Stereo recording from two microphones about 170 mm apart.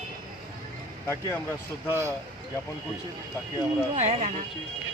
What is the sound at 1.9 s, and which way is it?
Speech, 15° right (ahead or behind).